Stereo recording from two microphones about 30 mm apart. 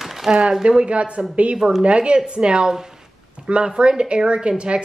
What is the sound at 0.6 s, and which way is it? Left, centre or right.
Speech, right.